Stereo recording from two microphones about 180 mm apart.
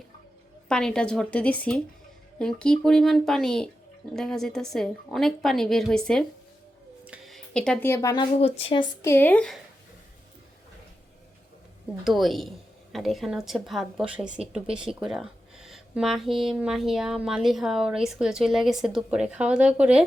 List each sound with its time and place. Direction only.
0.7 s a woman's voice: 5° left (ahead or behind); by 9.0 s 25° left (ahead or behind)
9.0 s speech: 10° left (ahead or behind)
12.0 s a woman's voice: centre (ahead or behind)